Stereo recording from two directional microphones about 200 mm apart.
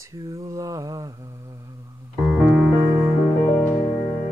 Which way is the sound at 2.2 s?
5° right (ahead or behind).